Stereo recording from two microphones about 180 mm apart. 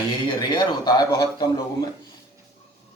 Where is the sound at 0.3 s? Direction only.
25° left (ahead or behind).